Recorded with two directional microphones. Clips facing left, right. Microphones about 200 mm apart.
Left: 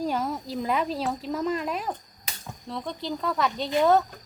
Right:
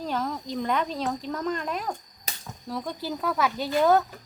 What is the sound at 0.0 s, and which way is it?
A child's voice, 10° left (ahead or behind).